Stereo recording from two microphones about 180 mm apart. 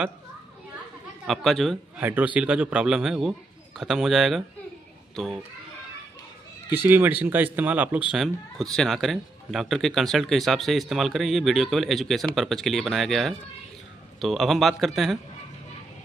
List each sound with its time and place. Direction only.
1.2 s a man's voice: centre (ahead or behind)
6.7 s a man's voice: 10° right (ahead or behind)